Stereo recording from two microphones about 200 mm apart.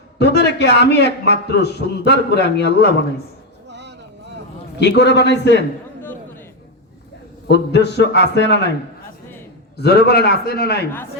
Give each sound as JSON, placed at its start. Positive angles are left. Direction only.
{"t": 0.2, "sound": "a man's voice", "side_deg": 55}
{"t": 3.7, "sound": "vehicle", "side_deg": -60}
{"t": 4.8, "sound": "a man's voice", "side_deg": 55}
{"t": 7.4, "sound": "a man's voice", "side_deg": 60}
{"t": 9.7, "sound": "a man's voice", "side_deg": 55}